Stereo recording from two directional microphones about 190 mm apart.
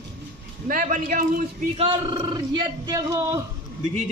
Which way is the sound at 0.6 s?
45° right (ahead or behind).